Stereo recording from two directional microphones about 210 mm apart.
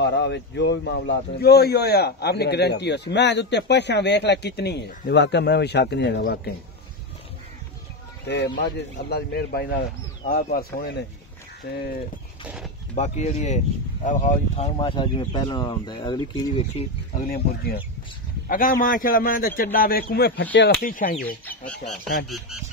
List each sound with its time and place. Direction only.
0.0 s speech: 55° left (ahead or behind)
8.5 s speech: 55° left (ahead or behind)
12.4 s speech: 5° right (ahead or behind)
12.9 s speech: 35° left (ahead or behind)
18.5 s speech: 40° left (ahead or behind)